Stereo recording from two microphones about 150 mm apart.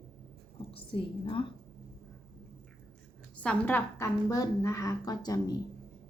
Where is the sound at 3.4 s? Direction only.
10° left (ahead or behind); by 5.5 s 25° left (ahead or behind).